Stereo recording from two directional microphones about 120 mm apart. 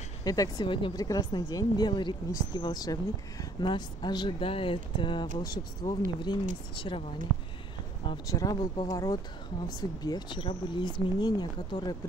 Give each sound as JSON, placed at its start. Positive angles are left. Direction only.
{"t": 0.2, "sound": "a woman's voice", "side_deg": 30}
{"t": 8.3, "sound": "a woman's voice", "side_deg": 30}